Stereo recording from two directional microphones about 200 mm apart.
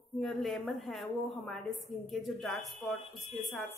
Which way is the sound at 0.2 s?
Centre (ahead or behind).